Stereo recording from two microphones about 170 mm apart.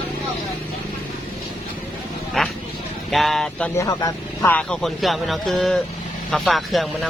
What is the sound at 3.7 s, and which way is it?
Speech, 20° left (ahead or behind).